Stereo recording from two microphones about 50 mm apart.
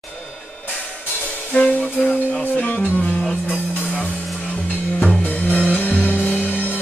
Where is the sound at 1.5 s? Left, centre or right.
Left.